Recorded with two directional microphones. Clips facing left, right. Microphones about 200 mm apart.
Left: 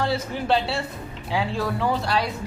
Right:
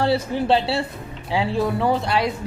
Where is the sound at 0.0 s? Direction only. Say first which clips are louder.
Right 5 dB; 30° right (ahead or behind).